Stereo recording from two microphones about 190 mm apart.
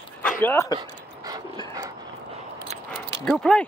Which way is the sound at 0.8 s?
20° right (ahead or behind).